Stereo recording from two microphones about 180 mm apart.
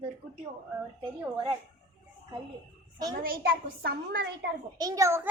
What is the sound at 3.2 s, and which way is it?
A child's voice, 55° right (ahead or behind).